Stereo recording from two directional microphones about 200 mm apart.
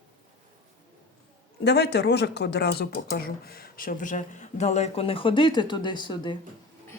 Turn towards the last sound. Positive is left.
turn(degrees=20)  # may be behind; listen again after turning